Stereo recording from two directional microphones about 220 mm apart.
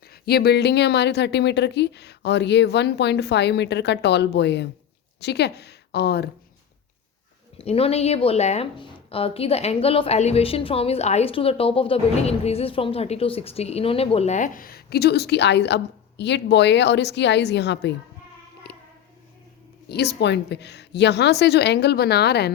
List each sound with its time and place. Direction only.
0.1 s a woman's voice: 45° left (ahead or behind)
7.6 s a woman's voice: 25° left (ahead or behind); by 17.9 s 50° left (ahead or behind)
18.7 s a sound: 50° left (ahead or behind)
19.9 s a woman's voice: 50° left (ahead or behind)